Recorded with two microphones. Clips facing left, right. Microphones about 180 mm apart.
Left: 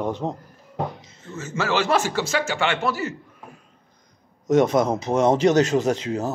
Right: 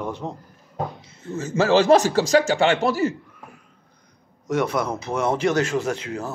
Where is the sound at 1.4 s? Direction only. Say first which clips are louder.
Right 6 dB; 40° right (ahead or behind).